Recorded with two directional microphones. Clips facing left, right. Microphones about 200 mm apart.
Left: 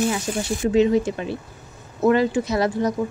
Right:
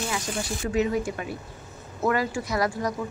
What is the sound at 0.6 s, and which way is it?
A woman's voice, 25° left (ahead or behind).